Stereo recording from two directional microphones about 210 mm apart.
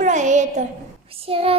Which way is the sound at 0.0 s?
35° right (ahead or behind).